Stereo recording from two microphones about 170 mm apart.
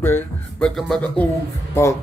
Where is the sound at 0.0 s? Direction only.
10° left (ahead or behind).